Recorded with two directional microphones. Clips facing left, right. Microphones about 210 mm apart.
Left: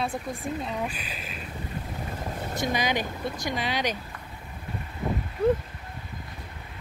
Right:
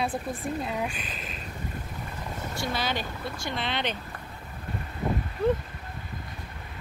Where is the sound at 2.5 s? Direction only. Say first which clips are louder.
Left 4 dB; 15° left (ahead or behind).